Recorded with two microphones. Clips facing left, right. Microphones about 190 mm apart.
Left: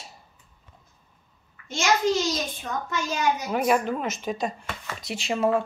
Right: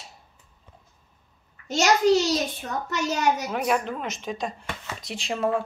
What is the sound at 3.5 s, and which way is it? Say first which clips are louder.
Speech: left 2 dB; centre (ahead or behind).